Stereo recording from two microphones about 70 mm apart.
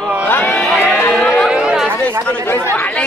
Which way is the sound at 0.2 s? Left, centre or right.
Left.